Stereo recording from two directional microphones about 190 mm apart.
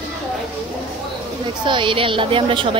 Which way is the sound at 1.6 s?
25° right (ahead or behind).